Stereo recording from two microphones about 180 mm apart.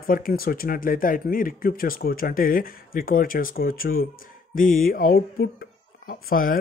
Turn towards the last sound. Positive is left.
turn(degrees=50)  # may be behind; listen again after turning